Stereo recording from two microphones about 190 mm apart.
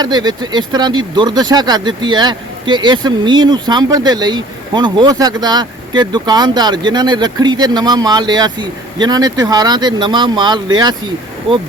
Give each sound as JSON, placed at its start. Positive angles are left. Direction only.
{"t": 0.0, "sound": "speech", "side_deg": -20}